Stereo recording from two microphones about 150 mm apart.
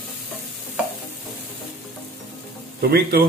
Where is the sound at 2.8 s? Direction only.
90° right.